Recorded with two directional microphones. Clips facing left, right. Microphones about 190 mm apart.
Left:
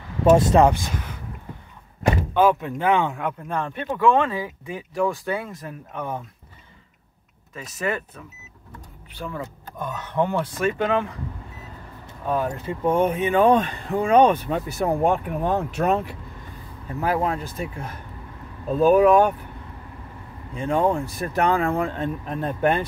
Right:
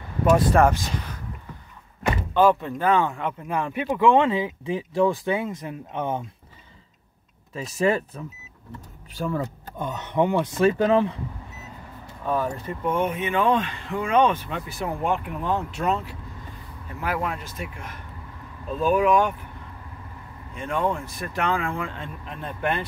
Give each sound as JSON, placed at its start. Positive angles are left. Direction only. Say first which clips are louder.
{"t": 0.2, "sound": "speech", "louder": "left 3 dB", "side_deg": 25}
{"t": 2.3, "sound": "speech", "louder": "right 2 dB", "side_deg": 15}
{"t": 3.4, "sound": "speech", "louder": "right 5 dB", "side_deg": -10}
{"t": 7.5, "sound": "speech", "louder": "right 5 dB", "side_deg": -30}
{"t": 9.1, "sound": "speech", "louder": "right 5 dB", "side_deg": -40}
{"t": 9.8, "sound": "speech", "louder": "right 1 dB", "side_deg": -20}
{"t": 12.8, "sound": "speech", "louder": "left 4 dB", "side_deg": 35}
{"t": 17.0, "sound": "speech", "louder": "left 5 dB", "side_deg": 30}
{"t": 20.5, "sound": "speech", "louder": "left 5 dB", "side_deg": 35}